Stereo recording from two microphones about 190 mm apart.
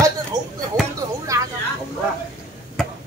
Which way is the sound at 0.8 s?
Centre (ahead or behind).